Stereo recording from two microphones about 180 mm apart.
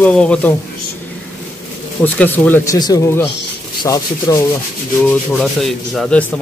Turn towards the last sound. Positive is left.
turn(degrees=5)  # may be behind; listen again after turning